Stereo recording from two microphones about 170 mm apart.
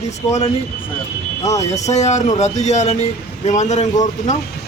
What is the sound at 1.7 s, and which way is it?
Speech, 40° left (ahead or behind).